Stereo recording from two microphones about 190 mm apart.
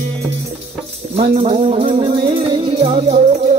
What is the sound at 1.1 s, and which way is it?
Music, 30° right (ahead or behind).